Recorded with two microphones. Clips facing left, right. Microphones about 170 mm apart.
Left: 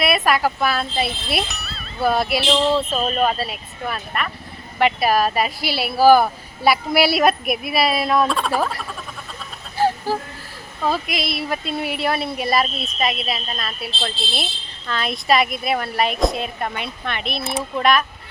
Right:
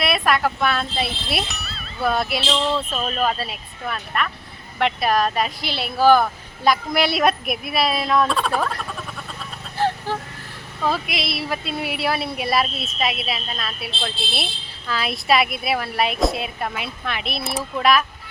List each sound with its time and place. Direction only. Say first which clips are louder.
0.0 s speech: left 2 dB; centre (ahead or behind)
2.6 s speech: left 4 dB; 25° left (ahead or behind)
3.1 s speech: left 3 dB; centre (ahead or behind)
9.7 s vehicle: left 3 dB; 10° left (ahead or behind)
10.8 s speech: left 1 dB; centre (ahead or behind)